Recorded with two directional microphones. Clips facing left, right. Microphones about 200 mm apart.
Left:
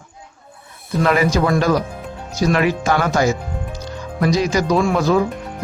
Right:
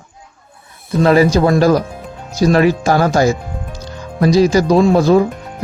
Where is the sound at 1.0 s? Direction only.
30° right (ahead or behind).